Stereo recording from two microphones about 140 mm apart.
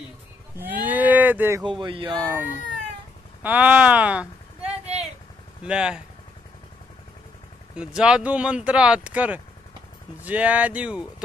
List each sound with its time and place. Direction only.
0.6 s cattle: 15° right (ahead or behind)
1.6 s speech: 35° right (ahead or behind)
2.2 s speech: 15° right (ahead or behind)
7.7 s speech: 5° right (ahead or behind)